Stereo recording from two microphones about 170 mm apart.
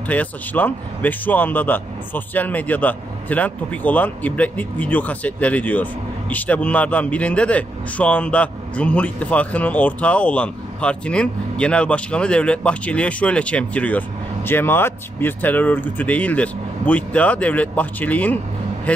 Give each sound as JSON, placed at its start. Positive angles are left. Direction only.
{"t": 0.1, "sound": "a man's voice", "side_deg": 10}